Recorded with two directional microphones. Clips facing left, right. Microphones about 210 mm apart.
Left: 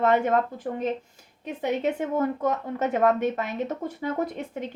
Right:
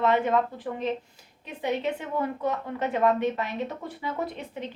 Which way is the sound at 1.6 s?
45° left (ahead or behind).